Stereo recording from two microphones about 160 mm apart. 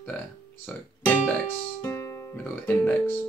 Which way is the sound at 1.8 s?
20° left (ahead or behind).